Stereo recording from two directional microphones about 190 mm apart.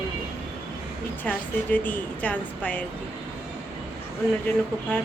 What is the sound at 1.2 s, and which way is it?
A woman's voice, 10° left (ahead or behind).